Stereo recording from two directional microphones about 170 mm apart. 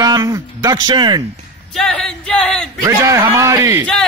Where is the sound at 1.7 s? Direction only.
5° left (ahead or behind).